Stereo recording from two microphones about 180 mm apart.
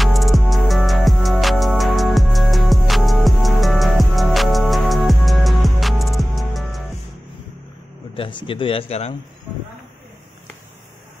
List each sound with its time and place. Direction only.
0.0 s music: centre (ahead or behind)
8.2 s speech: 25° left (ahead or behind)